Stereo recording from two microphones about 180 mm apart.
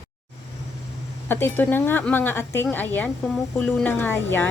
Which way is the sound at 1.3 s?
10° left (ahead or behind).